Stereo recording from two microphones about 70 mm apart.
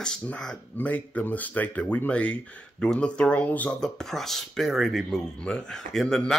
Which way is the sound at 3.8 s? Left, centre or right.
Centre.